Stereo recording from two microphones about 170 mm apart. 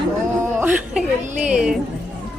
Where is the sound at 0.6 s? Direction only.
10° right (ahead or behind).